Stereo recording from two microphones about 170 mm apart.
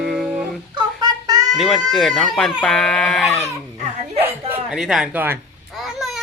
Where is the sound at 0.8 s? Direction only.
25° right (ahead or behind).